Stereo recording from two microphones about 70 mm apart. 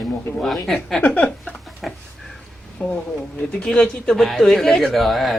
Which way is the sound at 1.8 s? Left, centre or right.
Centre.